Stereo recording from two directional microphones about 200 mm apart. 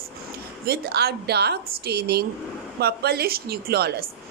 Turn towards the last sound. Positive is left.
turn(degrees=-50)  # may be behind; listen again after turning